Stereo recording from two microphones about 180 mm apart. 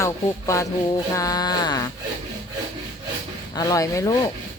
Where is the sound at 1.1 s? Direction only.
20° left (ahead or behind).